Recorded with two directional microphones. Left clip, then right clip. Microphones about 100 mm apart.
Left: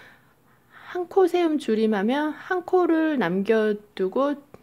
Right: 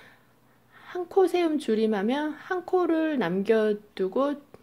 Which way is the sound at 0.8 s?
20° left (ahead or behind).